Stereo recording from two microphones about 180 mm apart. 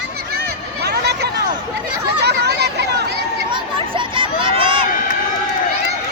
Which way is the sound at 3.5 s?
30° right (ahead or behind).